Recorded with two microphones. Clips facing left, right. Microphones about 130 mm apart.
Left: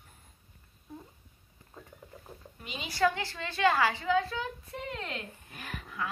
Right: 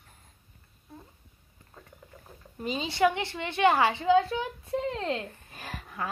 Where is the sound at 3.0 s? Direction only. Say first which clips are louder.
Right 3 dB; 20° right (ahead or behind).